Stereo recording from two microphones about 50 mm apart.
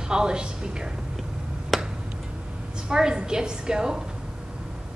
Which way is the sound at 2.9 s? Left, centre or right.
Centre.